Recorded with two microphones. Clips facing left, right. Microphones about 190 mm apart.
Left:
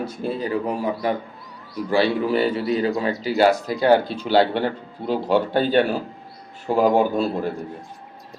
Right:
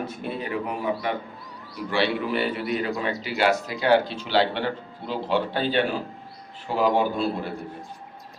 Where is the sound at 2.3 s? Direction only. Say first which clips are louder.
Left 5 dB; 35° left (ahead or behind).